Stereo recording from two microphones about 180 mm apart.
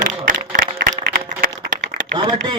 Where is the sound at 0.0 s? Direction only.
50° right (ahead or behind).